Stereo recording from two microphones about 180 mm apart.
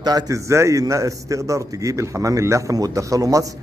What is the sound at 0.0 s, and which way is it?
A man's voice, 20° right (ahead or behind).